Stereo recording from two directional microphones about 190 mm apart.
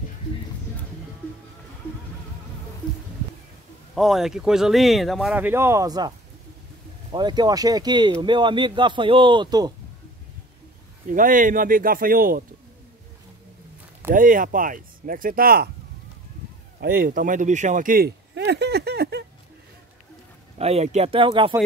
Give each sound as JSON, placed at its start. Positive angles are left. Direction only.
{"t": 3.9, "sound": "speech", "side_deg": 0}
{"t": 11.1, "sound": "speech", "side_deg": -45}
{"t": 14.1, "sound": "speech", "side_deg": -45}
{"t": 16.8, "sound": "speech", "side_deg": -50}
{"t": 18.3, "sound": "a sound", "side_deg": -65}
{"t": 20.5, "sound": "speech", "side_deg": -35}